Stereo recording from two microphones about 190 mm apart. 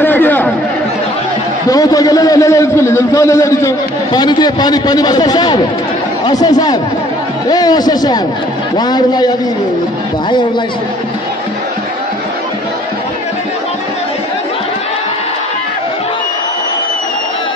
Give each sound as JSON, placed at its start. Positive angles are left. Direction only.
{"t": 0.0, "sound": "chatter", "side_deg": 10}
{"t": 1.7, "sound": "a man's voice", "side_deg": 20}